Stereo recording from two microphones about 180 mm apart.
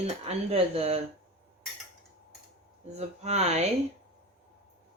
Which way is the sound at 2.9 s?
35° right (ahead or behind).